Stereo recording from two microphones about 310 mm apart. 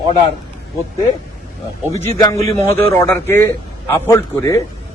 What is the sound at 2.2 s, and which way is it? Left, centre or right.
A man's voice, centre.